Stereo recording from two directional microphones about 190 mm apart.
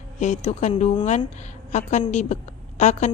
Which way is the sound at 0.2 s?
40° left (ahead or behind).